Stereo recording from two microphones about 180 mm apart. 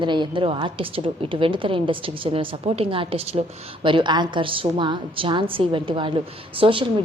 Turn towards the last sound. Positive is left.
turn(degrees=-30)  # may be behind; listen again after turning